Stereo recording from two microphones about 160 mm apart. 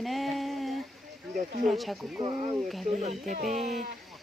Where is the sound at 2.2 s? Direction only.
30° right (ahead or behind).